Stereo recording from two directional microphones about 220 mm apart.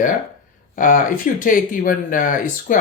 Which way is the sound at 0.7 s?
35° left (ahead or behind).